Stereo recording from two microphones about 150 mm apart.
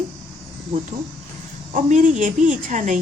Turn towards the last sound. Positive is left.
turn(degrees=-55)  # may be behind; listen again after turning